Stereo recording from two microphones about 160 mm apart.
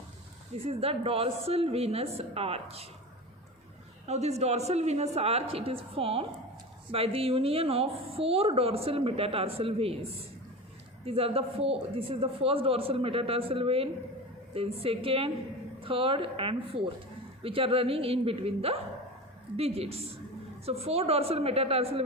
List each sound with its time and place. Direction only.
0.6 s a woman's voice: 35° right (ahead or behind)
4.0 s a woman's voice: 40° right (ahead or behind)